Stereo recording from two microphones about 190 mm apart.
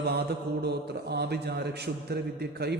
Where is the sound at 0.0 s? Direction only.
60° right (ahead or behind).